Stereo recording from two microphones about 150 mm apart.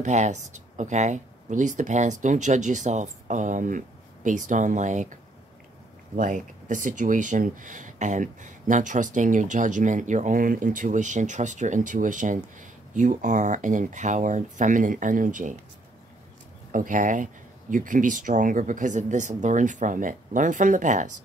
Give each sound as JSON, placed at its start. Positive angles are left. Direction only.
{"t": 0.0, "sound": "speech", "side_deg": -50}
{"t": 16.7, "sound": "speech", "side_deg": -60}